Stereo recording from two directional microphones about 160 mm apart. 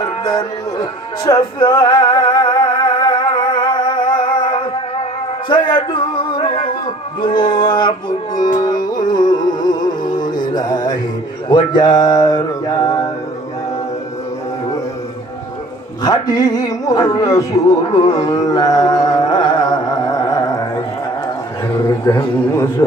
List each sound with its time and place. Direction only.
0.0 s music: 25° left (ahead or behind)
7.2 s mantra: 30° left (ahead or behind)
8.4 s music: 25° left (ahead or behind)
11.4 s mantra: 30° left (ahead or behind)
16.0 s music: 25° left (ahead or behind)
21.8 s mantra: 20° left (ahead or behind)